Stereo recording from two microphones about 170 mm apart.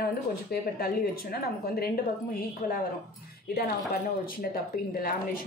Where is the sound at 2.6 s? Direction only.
45° left (ahead or behind).